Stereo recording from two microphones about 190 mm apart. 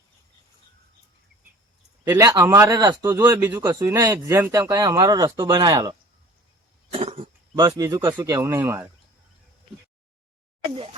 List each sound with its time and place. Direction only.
2.0 s speech: 15° right (ahead or behind)
6.9 s cough: 30° right (ahead or behind)
7.5 s speech: 15° right (ahead or behind)